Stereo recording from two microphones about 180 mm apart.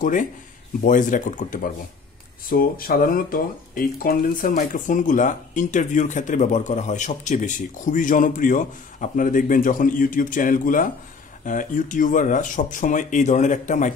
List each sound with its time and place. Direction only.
0.0 s speech: 45° left (ahead or behind)